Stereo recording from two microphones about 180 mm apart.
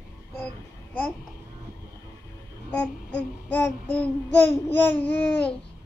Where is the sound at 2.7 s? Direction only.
5° left (ahead or behind).